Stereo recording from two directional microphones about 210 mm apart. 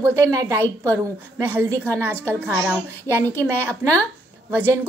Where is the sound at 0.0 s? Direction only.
15° right (ahead or behind).